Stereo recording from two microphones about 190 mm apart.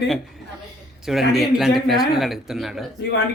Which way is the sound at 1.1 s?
Centre (ahead or behind).